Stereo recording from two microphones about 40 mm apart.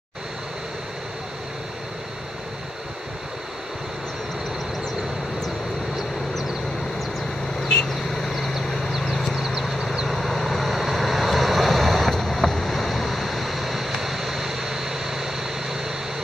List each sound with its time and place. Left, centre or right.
7.6 s vehicle: centre
9.6 s vehicle: centre
10.0 s vehicle: centre